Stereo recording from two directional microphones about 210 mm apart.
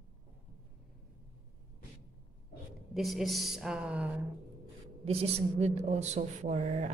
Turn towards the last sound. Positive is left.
turn(degrees=-35)  # may be behind; listen again after turning